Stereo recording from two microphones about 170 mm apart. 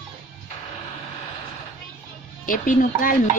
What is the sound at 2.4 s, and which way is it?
Speech, 50° left (ahead or behind).